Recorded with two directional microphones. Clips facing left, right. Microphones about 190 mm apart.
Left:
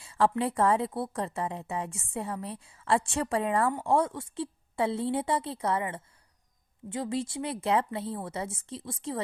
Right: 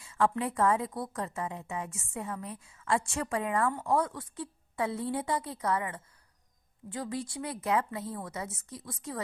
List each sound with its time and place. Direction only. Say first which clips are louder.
0.0 s a woman's voice: left 3 dB; 30° left (ahead or behind)